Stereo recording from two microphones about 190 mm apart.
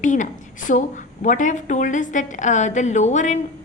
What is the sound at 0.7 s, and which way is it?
A woman's voice, 40° left (ahead or behind).